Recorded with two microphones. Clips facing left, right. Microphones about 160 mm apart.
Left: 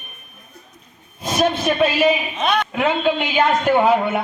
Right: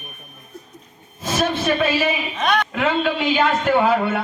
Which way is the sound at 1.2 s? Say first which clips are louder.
Left 3 dB; 15° left (ahead or behind).